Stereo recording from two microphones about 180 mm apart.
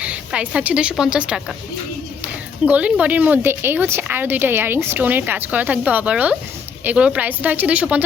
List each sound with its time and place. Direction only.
0.0 s a woman's voice: 5° right (ahead or behind)